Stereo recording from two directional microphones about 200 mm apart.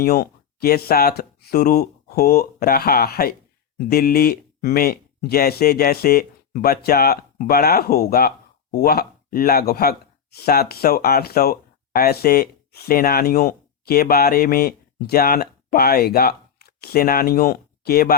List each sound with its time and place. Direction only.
0.0 s speech: 50° left (ahead or behind)